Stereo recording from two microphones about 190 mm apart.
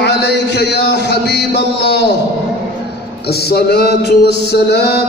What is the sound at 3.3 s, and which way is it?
Mantra, 55° left (ahead or behind).